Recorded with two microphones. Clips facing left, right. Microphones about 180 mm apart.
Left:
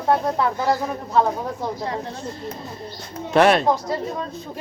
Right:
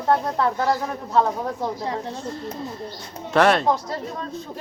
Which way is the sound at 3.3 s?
15° left (ahead or behind).